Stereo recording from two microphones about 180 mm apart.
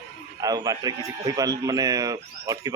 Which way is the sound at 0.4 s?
20° right (ahead or behind).